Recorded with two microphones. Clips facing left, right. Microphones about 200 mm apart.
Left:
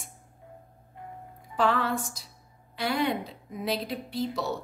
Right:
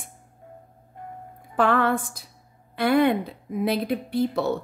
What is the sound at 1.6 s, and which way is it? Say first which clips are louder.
A woman's voice: right 5 dB; 55° right (ahead or behind).